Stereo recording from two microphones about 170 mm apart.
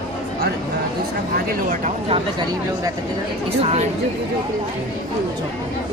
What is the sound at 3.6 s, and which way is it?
Speech, 40° right (ahead or behind).